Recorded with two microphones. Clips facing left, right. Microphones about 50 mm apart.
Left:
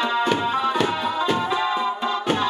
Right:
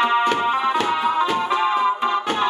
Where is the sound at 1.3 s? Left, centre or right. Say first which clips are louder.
Right 3 dB; right.